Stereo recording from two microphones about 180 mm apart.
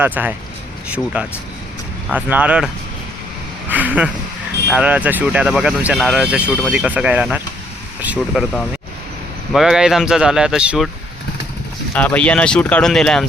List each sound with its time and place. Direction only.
0.0 s speech: 10° right (ahead or behind)
3.7 s speech: 10° right (ahead or behind)
9.5 s speech: centre (ahead or behind)
11.9 s speech: 10° left (ahead or behind)